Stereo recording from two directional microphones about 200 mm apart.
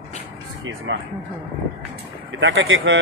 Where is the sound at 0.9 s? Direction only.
70° right (ahead or behind).